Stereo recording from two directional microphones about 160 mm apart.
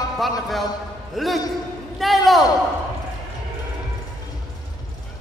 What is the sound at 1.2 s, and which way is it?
A man's voice, centre (ahead or behind).